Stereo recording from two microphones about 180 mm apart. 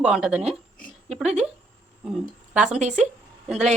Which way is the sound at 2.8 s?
40° right (ahead or behind).